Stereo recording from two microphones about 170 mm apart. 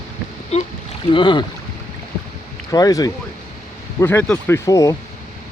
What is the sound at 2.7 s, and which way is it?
Speech, 20° left (ahead or behind).